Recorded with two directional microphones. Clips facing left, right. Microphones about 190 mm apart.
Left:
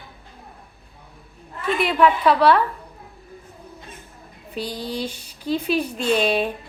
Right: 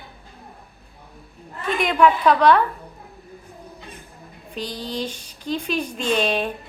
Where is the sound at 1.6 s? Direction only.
5° left (ahead or behind).